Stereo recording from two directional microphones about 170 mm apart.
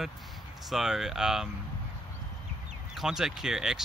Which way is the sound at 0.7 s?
Centre (ahead or behind).